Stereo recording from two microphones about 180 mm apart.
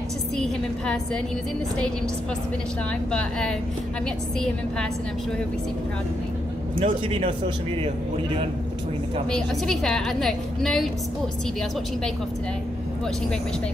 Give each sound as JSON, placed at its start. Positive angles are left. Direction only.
{"t": 0.4, "sound": "a woman's voice", "side_deg": 5}
{"t": 3.1, "sound": "a woman's voice", "side_deg": 5}
{"t": 6.8, "sound": "speech", "side_deg": -35}
{"t": 9.3, "sound": "a woman's voice", "side_deg": 5}